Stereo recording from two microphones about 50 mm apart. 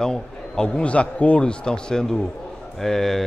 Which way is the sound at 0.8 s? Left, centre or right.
Left.